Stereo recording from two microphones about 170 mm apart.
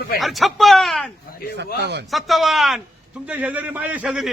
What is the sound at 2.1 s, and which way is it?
A man's voice, centre (ahead or behind).